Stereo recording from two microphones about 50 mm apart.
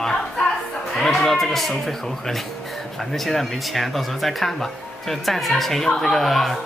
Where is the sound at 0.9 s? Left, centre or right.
Centre.